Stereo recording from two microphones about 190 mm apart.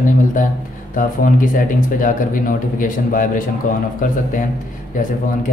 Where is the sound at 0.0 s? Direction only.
45° left (ahead or behind).